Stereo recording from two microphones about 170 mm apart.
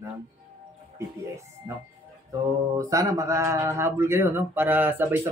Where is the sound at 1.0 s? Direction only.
15° right (ahead or behind).